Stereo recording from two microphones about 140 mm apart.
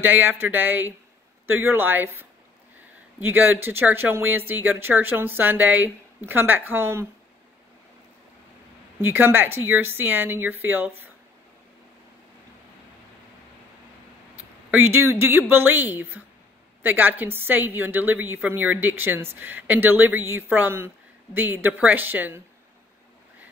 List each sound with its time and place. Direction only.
0.0 s a woman's voice: 15° right (ahead or behind)
9.0 s a woman's voice: 15° right (ahead or behind)
14.7 s a woman's voice: 15° right (ahead or behind)